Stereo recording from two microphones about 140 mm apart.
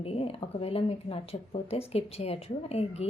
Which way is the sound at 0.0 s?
45° left (ahead or behind).